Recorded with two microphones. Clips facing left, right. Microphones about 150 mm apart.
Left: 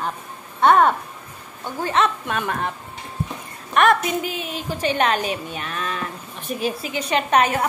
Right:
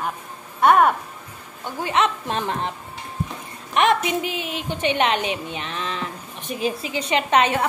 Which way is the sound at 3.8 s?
20° right (ahead or behind).